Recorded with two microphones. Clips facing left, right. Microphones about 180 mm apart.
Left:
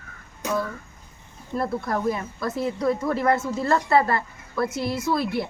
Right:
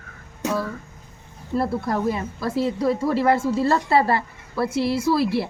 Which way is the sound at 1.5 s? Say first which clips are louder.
Right 3 dB; 30° right (ahead or behind).